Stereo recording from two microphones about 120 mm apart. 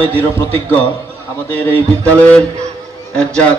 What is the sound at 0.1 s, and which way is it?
A man's voice, 15° left (ahead or behind).